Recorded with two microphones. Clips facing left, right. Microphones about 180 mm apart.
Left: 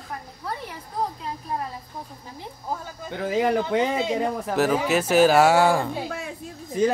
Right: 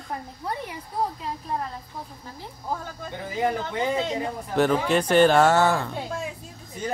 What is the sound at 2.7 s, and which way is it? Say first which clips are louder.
Speech: right 1 dB; 5° left (ahead or behind).